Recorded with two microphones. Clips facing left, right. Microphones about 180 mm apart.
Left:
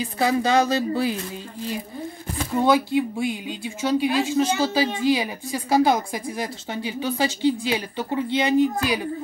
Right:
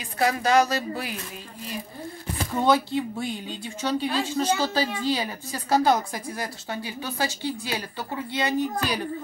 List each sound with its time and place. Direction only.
0.0 s a woman's voice: 25° left (ahead or behind)
2.5 s speech: 10° left (ahead or behind)